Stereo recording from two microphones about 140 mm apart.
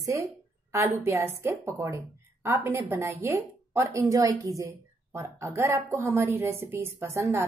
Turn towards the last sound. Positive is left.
turn(degrees=-20)  # may be behind; listen again after turning